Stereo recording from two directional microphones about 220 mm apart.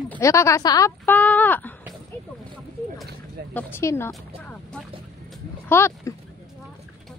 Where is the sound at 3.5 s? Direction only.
10° left (ahead or behind).